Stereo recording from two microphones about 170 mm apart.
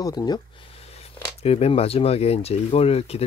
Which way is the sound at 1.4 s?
35° left (ahead or behind).